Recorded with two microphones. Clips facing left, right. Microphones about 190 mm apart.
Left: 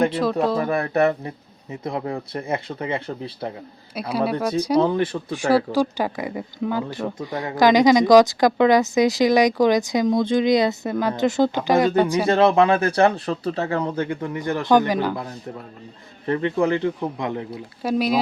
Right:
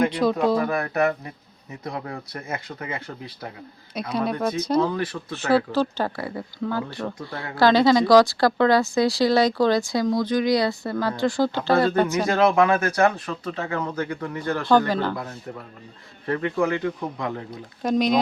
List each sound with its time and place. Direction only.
0.2 s speech: centre (ahead or behind)
0.6 s speech: 30° left (ahead or behind)
4.1 s speech: 5° left (ahead or behind)
12.3 s speech: 30° left (ahead or behind)
16.2 s speech: 25° left (ahead or behind)
17.5 s speech: 5° left (ahead or behind)